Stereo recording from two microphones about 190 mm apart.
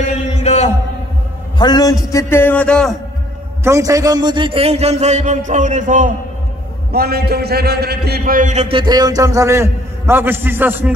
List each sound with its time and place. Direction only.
0.1 s chant: 35° left (ahead or behind)
1.6 s a man's voice: 20° left (ahead or behind); by 3.0 s 5° left (ahead or behind)
3.6 s a man's voice: 15° right (ahead or behind); by 6.1 s 45° right (ahead or behind)
6.9 s a man's voice: 55° right (ahead or behind); by 11.0 s 10° right (ahead or behind)